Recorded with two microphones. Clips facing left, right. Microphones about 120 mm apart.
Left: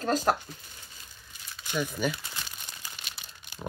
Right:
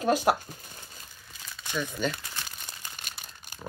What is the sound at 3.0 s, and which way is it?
Crumpling, 45° right (ahead or behind).